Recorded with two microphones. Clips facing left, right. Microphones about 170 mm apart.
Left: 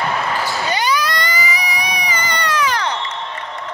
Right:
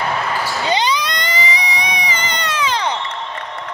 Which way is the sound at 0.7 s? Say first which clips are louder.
Right 2 dB; 20° right (ahead or behind).